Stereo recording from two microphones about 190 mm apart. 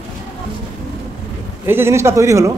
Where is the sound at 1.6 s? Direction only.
10° right (ahead or behind).